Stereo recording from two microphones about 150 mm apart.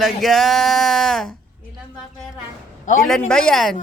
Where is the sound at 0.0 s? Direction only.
Centre (ahead or behind).